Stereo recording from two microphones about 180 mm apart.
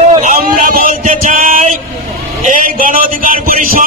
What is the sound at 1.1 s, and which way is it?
Music, 45° right (ahead or behind).